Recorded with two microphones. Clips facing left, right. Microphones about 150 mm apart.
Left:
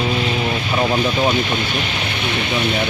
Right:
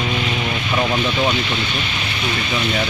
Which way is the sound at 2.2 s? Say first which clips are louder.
Left 1 dB; 60° left (ahead or behind).